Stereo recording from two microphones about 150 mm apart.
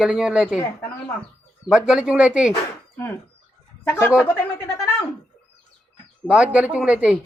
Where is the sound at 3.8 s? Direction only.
15° left (ahead or behind).